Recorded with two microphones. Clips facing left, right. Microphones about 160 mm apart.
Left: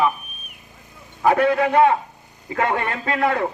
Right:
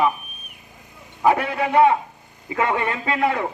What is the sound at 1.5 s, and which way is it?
Speech, 20° right (ahead or behind).